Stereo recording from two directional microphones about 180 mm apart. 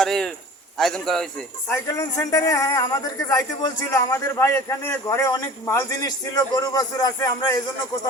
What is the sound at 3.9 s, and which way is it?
A man's voice, 15° left (ahead or behind).